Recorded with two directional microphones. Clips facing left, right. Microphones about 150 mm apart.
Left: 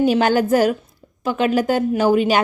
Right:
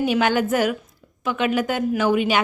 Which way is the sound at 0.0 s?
40° left (ahead or behind).